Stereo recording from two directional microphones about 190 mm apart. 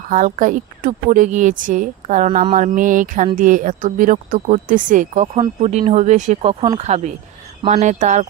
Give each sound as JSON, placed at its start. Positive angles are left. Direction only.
{"t": 0.1, "sound": "a woman's voice", "side_deg": -45}